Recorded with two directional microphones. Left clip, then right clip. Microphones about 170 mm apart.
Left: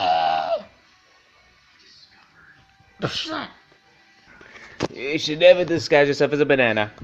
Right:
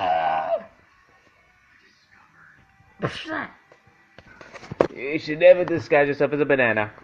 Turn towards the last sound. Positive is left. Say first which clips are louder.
# left 2 dB
turn(degrees=25)  # may be behind; listen again after turning